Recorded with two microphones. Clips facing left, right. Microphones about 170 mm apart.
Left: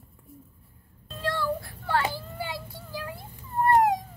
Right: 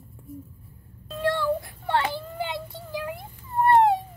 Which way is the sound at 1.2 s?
20° right (ahead or behind).